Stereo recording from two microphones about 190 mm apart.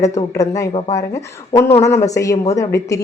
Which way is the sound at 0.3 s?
15° left (ahead or behind).